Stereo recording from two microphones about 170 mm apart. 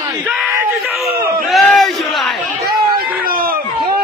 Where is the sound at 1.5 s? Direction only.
Centre (ahead or behind).